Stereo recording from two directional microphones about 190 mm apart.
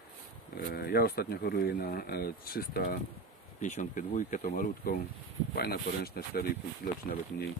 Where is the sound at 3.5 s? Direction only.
40° left (ahead or behind).